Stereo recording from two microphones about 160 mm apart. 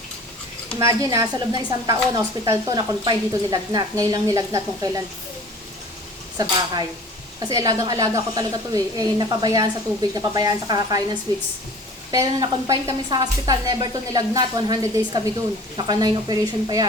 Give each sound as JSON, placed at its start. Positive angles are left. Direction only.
{"t": 0.8, "sound": "a woman's voice", "side_deg": -20}
{"t": 6.3, "sound": "a woman's voice", "side_deg": -25}